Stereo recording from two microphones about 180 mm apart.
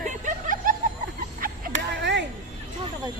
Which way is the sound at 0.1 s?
50° right (ahead or behind).